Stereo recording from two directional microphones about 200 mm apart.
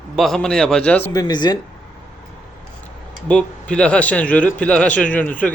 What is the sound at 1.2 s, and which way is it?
Speech, 20° left (ahead or behind).